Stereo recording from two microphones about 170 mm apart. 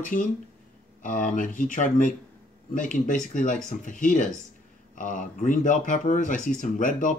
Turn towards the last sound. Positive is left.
turn(degrees=50)  # may be behind; listen again after turning